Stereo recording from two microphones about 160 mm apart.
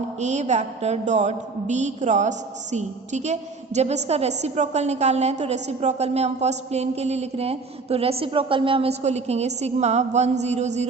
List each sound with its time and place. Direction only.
0.2 s a woman's voice: 45° right (ahead or behind)